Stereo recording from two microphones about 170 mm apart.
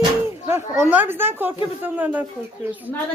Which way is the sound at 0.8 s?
10° right (ahead or behind).